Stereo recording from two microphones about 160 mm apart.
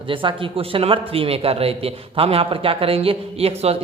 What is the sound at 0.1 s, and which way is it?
Speech, 30° right (ahead or behind).